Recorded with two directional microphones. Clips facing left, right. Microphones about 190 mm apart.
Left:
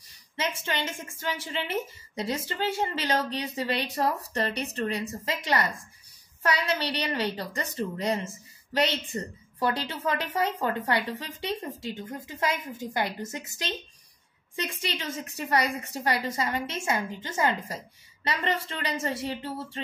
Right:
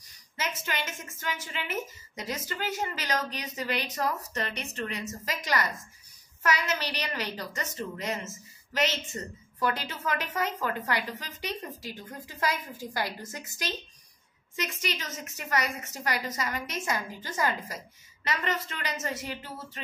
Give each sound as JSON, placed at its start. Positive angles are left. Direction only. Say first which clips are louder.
{"t": 0.4, "sound": "a woman's voice", "louder": "left 3 dB", "side_deg": 30}